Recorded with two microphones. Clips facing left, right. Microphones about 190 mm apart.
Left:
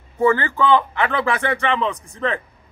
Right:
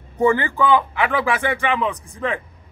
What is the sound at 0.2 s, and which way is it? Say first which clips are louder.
A man's voice: even; 15° right (ahead or behind).